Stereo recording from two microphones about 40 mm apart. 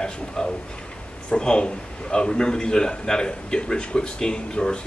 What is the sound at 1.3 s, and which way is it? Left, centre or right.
Speech, left.